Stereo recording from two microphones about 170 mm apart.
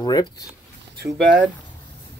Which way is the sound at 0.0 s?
25° left (ahead or behind).